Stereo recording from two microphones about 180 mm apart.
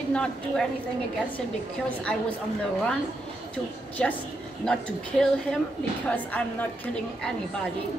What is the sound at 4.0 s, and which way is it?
Speech, 5° left (ahead or behind).